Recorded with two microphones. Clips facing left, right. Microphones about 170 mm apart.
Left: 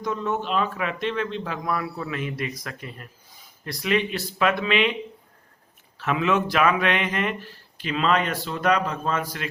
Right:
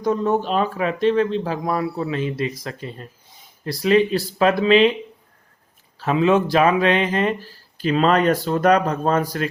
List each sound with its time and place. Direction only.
0.0 s speech: 35° right (ahead or behind)
6.0 s speech: 30° right (ahead or behind)